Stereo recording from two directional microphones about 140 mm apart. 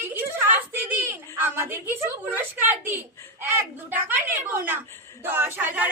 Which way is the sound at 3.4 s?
15° right (ahead or behind).